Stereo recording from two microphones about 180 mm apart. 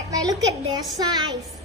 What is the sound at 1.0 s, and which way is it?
Speech, 25° right (ahead or behind).